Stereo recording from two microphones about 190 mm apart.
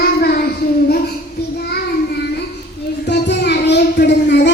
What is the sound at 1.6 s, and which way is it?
Child singing, 55° left (ahead or behind).